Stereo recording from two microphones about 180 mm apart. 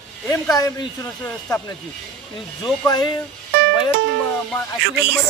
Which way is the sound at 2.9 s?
20° left (ahead or behind).